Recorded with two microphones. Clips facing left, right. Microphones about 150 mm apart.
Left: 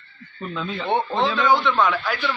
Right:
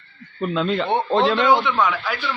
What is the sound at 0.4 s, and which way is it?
A man's voice, 80° right.